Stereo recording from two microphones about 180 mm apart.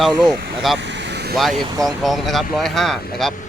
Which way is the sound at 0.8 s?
75° right (ahead or behind).